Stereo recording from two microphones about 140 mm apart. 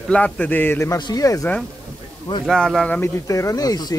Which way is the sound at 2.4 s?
5° left (ahead or behind).